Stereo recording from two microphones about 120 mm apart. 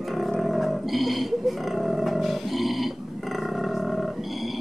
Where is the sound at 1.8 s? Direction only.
Centre (ahead or behind).